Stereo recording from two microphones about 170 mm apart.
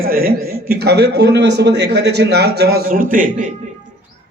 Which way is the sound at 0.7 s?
75° right (ahead or behind).